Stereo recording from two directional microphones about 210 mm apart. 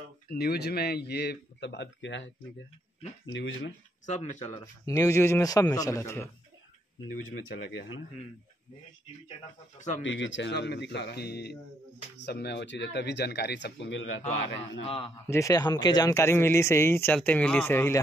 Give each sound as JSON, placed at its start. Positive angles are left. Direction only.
{"t": 0.3, "sound": "speech", "side_deg": 50}
{"t": 3.3, "sound": "speech", "side_deg": 60}
{"t": 4.0, "sound": "speech", "side_deg": 35}
{"t": 4.6, "sound": "speech", "side_deg": 15}
{"t": 7.4, "sound": "speech", "side_deg": 60}
{"t": 9.8, "sound": "speech", "side_deg": 35}
{"t": 10.0, "sound": "speech", "side_deg": 60}
{"t": 14.8, "sound": "a man's voice", "side_deg": 25}
{"t": 15.2, "sound": "speech", "side_deg": 15}